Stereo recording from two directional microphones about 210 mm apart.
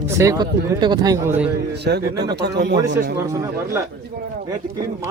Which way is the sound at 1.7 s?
50° right (ahead or behind).